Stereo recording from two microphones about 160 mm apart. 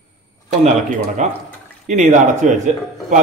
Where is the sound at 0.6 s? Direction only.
45° right (ahead or behind).